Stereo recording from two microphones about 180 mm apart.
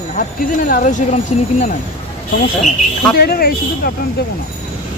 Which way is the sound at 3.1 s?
60° left (ahead or behind).